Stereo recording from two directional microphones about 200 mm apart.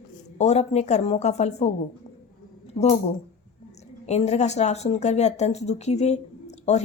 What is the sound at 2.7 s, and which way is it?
Speech, 35° left (ahead or behind).